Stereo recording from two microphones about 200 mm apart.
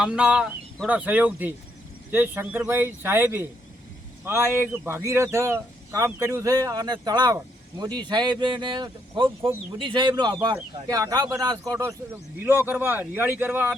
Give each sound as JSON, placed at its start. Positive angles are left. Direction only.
{"t": 0.0, "sound": "speech", "side_deg": -5}